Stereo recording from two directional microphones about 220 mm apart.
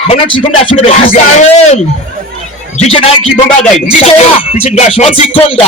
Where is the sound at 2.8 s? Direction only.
25° left (ahead or behind).